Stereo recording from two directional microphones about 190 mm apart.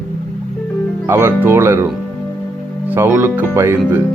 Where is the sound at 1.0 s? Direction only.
10° right (ahead or behind).